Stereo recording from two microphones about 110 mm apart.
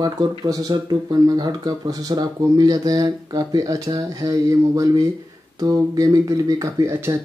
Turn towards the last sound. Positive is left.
turn(degrees=-25)  # may be behind; listen again after turning